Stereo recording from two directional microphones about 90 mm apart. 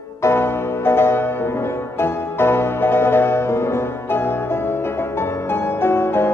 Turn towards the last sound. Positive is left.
turn(degrees=25)  # may be behind; listen again after turning